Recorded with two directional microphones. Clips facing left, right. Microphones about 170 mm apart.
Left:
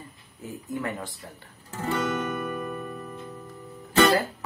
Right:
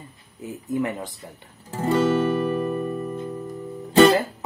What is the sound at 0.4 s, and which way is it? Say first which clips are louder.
Speech: right 6 dB; 20° right (ahead or behind).